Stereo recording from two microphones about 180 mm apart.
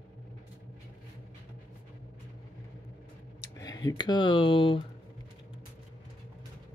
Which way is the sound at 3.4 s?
20° left (ahead or behind).